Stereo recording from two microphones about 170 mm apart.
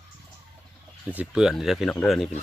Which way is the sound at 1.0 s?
5° right (ahead or behind).